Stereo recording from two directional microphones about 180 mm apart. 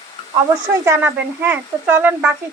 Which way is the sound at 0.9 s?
10° right (ahead or behind).